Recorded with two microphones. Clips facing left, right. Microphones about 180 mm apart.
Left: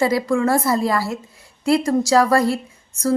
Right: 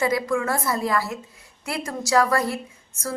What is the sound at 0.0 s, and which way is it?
Speech, 35° left (ahead or behind).